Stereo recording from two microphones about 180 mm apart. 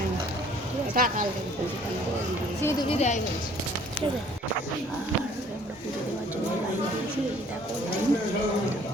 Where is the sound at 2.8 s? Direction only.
35° left (ahead or behind).